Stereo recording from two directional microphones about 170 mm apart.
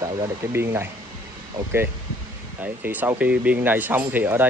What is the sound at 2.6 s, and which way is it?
Speech, 10° right (ahead or behind).